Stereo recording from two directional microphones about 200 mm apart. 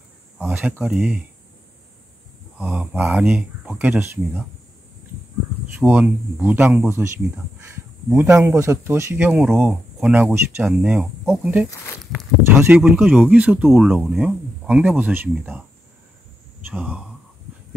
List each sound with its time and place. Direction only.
0.4 s speech: 10° right (ahead or behind)
2.6 s speech: 5° right (ahead or behind)
5.8 s speech: 10° right (ahead or behind)
8.1 s speech: 10° right (ahead or behind)
16.6 s speech: 5° right (ahead or behind)